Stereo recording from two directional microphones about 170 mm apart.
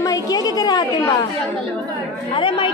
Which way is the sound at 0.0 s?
20° left (ahead or behind).